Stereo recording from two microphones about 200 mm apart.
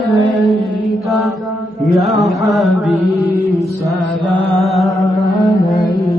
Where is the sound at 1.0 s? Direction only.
Centre (ahead or behind).